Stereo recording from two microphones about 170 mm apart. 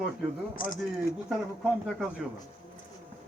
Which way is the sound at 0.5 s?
55° left (ahead or behind).